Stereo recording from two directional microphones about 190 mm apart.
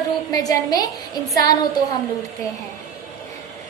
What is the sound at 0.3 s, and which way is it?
Speech, 20° left (ahead or behind).